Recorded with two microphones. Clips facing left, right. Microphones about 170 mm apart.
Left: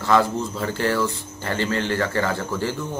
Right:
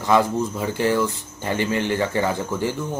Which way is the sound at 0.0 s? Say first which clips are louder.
Right 1 dB; 15° right (ahead or behind).